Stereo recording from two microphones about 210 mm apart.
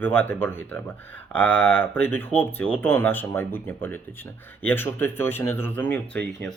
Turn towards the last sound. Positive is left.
turn(degrees=5)  # may be behind; listen again after turning